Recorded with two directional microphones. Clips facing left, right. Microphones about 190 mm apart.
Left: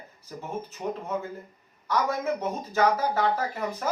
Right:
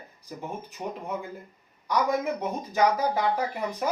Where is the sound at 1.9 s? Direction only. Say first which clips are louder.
Right 1 dB; 15° right (ahead or behind).